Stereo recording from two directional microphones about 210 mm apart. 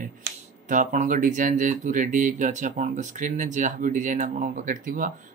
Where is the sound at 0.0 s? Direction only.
40° right (ahead or behind).